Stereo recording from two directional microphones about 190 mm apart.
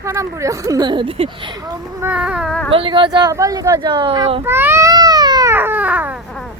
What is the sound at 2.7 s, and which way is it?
Speech, 25° right (ahead or behind).